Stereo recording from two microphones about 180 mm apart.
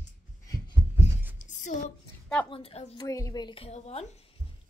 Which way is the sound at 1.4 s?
45° left (ahead or behind).